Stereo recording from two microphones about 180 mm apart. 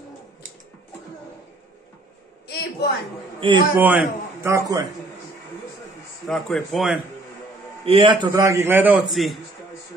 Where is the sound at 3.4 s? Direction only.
30° right (ahead or behind).